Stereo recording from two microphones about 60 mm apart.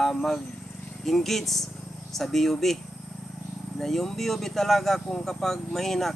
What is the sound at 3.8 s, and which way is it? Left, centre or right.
Speech, centre.